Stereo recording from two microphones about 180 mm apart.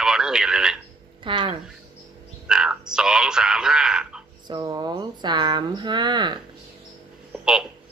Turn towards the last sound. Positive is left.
turn(degrees=-5)  # may be behind; listen again after turning